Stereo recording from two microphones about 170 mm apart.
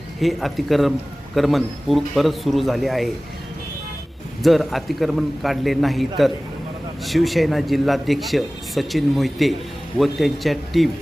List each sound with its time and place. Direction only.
0.2 s speech: centre (ahead or behind)
4.4 s speech: centre (ahead or behind)